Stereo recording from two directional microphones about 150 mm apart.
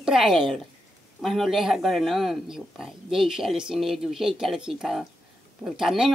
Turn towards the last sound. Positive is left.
turn(degrees=-5)  # may be behind; listen again after turning